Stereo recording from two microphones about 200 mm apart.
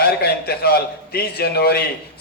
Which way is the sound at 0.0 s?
50° left (ahead or behind).